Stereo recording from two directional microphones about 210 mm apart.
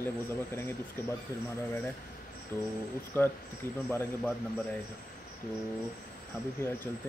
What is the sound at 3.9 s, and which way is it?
Speech, 10° left (ahead or behind).